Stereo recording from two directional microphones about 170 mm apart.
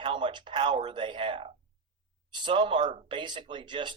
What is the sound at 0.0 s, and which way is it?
Speech, 30° right (ahead or behind).